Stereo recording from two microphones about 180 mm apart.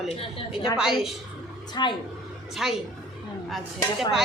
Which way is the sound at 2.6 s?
Centre (ahead or behind).